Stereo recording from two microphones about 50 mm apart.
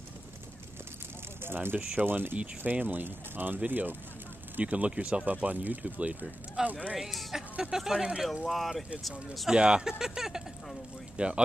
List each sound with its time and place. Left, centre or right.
1.4 s speech: right
6.6 s speech: centre
7.5 s speech: centre
8.5 s speech: centre
9.5 s speech: centre
11.1 s speech: right